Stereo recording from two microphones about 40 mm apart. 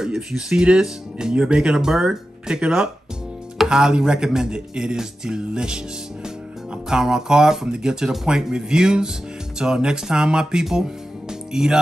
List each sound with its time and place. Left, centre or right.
0.0 s speech: centre
6.9 s speech: centre